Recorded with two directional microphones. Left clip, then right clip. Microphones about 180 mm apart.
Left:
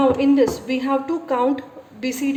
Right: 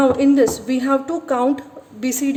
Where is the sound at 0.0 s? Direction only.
50° right (ahead or behind).